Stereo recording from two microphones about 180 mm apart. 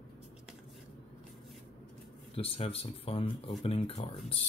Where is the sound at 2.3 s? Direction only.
30° left (ahead or behind).